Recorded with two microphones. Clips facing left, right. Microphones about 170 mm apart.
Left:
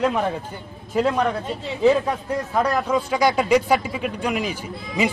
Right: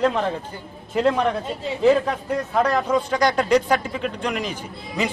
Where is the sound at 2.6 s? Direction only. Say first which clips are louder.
Right 2 dB; 5° left (ahead or behind).